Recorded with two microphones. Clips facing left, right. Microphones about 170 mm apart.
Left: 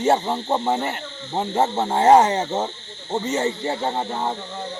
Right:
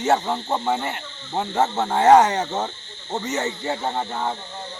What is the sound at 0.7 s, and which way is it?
Speech, 40° left (ahead or behind).